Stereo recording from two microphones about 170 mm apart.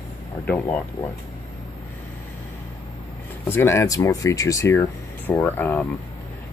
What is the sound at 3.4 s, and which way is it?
Speech, 15° left (ahead or behind).